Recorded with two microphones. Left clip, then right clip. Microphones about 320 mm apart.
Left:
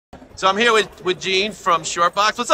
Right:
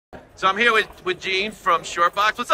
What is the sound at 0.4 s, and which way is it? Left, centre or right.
A man's voice, centre.